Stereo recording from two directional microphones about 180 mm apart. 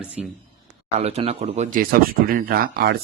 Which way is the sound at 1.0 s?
35° right (ahead or behind).